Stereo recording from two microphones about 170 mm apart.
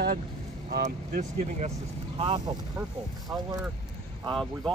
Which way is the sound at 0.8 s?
45° right (ahead or behind).